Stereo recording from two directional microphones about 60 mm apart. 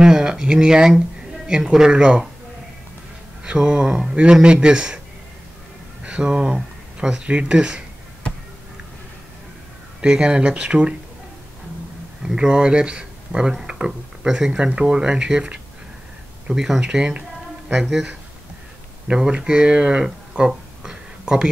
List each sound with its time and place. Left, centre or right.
0.0 s speech: centre
3.4 s speech: centre
6.0 s speech: centre
10.0 s speech: centre
12.2 s speech: centre